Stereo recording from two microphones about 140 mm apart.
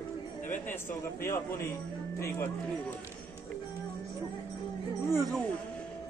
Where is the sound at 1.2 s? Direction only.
20° left (ahead or behind).